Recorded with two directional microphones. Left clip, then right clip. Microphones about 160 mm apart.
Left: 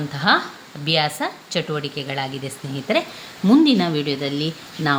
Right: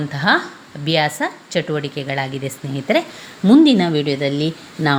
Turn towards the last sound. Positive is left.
turn(degrees=-25)  # may be behind; listen again after turning